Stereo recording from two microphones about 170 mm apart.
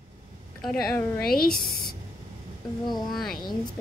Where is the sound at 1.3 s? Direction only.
60° left (ahead or behind).